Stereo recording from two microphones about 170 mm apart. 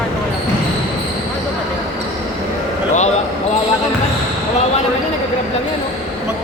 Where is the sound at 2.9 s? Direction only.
40° left (ahead or behind).